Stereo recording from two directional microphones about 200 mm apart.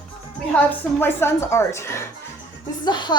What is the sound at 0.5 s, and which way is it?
A woman's voice, 10° left (ahead or behind).